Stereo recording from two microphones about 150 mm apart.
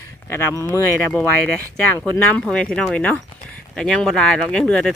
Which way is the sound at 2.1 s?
5° left (ahead or behind).